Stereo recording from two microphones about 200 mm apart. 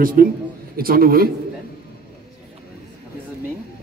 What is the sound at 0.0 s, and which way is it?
A man's voice, 45° right (ahead or behind).